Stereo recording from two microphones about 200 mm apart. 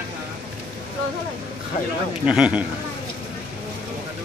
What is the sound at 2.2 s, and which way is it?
Speech, 5° right (ahead or behind).